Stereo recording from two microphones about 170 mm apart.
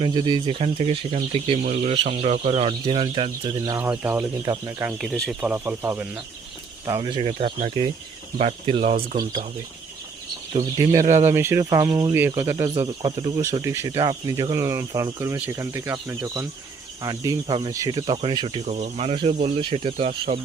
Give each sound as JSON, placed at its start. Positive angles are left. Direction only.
{"t": 0.0, "sound": "speech", "side_deg": -25}
{"t": 3.7, "sound": "speech", "side_deg": -15}
{"t": 4.9, "sound": "speech", "side_deg": 0}
{"t": 5.4, "sound": "speech", "side_deg": -10}
{"t": 6.8, "sound": "speech", "side_deg": -25}
{"t": 10.5, "sound": "speech", "side_deg": -25}